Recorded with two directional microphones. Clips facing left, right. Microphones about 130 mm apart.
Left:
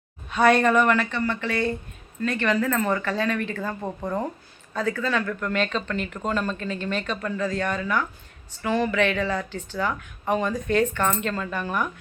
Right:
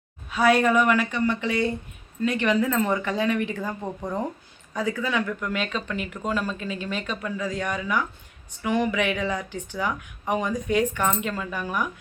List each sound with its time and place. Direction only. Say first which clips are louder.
0.3 s speech: left 1 dB; 5° right (ahead or behind)